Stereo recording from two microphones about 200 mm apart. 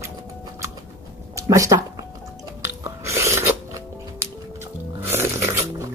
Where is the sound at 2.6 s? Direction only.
15° right (ahead or behind).